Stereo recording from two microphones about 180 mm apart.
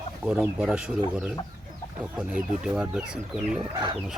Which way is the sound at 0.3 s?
5° right (ahead or behind).